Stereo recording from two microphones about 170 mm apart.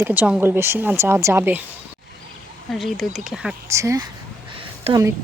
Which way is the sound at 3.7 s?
20° right (ahead or behind).